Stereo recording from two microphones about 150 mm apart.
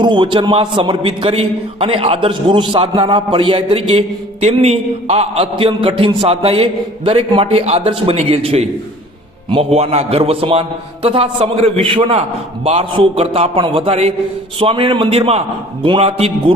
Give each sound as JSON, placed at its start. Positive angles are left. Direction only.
{"t": 0.0, "sound": "a man's voice", "side_deg": -30}